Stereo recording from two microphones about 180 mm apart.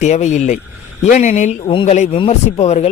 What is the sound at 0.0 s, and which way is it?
Speech, 40° left (ahead or behind).